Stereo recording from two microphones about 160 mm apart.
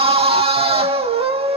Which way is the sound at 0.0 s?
35° right (ahead or behind).